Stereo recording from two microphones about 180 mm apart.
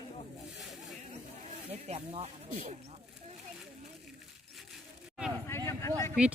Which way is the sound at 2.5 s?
50° right (ahead or behind).